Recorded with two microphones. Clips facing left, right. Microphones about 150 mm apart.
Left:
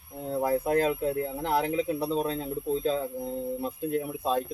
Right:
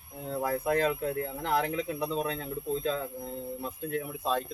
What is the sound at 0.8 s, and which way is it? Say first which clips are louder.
Speech: left 2 dB; 25° left (ahead or behind).